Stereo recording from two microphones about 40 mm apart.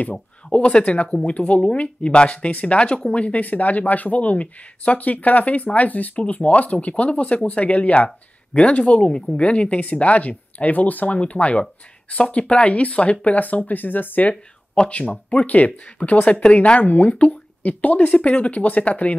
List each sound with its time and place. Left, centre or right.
0.1 s speech: left
14.9 s speech: left
16.8 s speech: left
17.3 s speech: left